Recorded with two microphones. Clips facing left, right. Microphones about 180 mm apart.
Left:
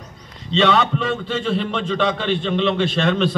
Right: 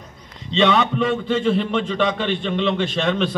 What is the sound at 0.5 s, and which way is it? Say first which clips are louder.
A man's voice: even; 15° right (ahead or behind).